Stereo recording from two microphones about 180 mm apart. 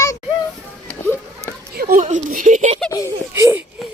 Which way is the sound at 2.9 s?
20° left (ahead or behind).